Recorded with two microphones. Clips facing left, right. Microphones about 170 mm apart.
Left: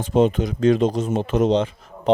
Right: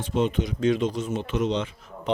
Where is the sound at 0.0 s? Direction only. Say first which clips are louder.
Left 7 dB; 40° left (ahead or behind).